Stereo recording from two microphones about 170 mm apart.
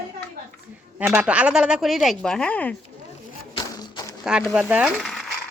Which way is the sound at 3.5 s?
25° left (ahead or behind).